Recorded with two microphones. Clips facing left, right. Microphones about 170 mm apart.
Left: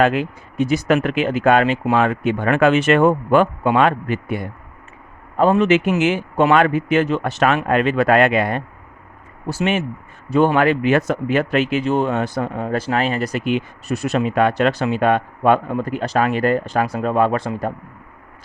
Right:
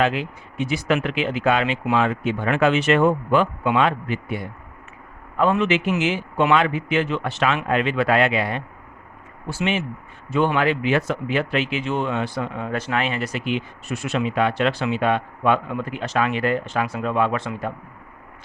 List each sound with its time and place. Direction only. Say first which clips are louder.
0.0 s speech: left 5 dB; 45° left (ahead or behind)
5.4 s speech: left 5 dB; 40° left (ahead or behind)